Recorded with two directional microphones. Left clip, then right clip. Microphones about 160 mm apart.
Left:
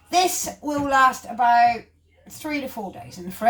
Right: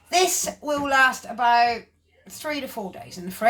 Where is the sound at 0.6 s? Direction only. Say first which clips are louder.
Left 1 dB; 15° right (ahead or behind).